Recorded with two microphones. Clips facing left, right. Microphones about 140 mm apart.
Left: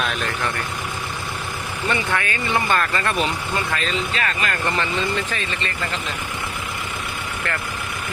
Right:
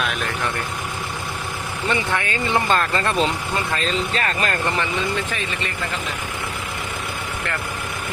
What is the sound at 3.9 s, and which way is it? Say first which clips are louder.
Speech: right 2 dB; 35° right (ahead or behind).